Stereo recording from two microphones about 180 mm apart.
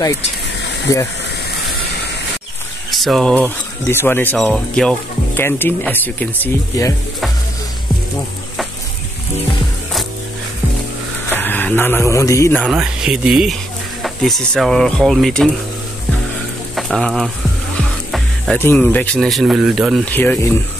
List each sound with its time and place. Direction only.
0.9 s speech: 20° left (ahead or behind)
2.9 s speech: centre (ahead or behind)
3.8 s speech: 15° left (ahead or behind)
11.2 s speech: 10° left (ahead or behind)
12.6 s speech: 5° right (ahead or behind)
16.7 s speech: centre (ahead or behind)
18.1 s music: centre (ahead or behind)
18.6 s speech: 10° left (ahead or behind)
20.1 s speech: 10° left (ahead or behind)